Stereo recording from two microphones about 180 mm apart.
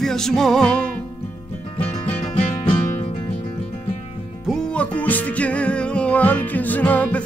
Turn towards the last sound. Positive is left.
turn(degrees=10)  # may be behind; listen again after turning